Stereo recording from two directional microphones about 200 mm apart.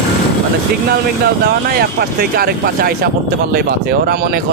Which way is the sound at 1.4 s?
50° right (ahead or behind).